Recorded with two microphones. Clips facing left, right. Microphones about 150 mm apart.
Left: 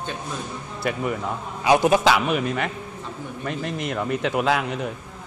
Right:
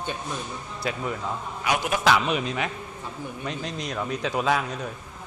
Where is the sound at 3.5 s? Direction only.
60° left (ahead or behind).